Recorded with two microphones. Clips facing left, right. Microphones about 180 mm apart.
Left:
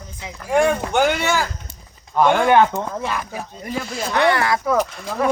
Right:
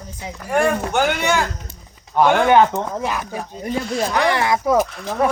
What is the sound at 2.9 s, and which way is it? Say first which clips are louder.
Speech: right 2 dB; 15° right (ahead or behind).